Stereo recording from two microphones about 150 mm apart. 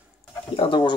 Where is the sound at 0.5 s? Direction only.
35° left (ahead or behind).